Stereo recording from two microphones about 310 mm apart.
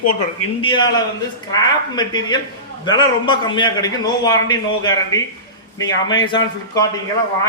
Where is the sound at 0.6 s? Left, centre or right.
Centre.